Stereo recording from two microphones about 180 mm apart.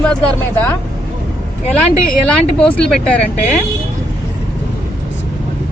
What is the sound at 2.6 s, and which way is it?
Speech, 5° left (ahead or behind).